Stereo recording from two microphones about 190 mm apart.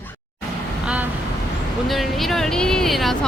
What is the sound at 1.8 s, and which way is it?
Speech, centre (ahead or behind).